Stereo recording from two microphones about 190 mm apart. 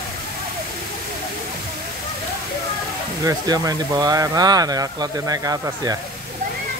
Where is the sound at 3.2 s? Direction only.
20° right (ahead or behind).